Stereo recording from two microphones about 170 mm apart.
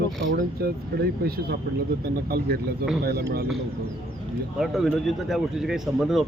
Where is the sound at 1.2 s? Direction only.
65° right (ahead or behind).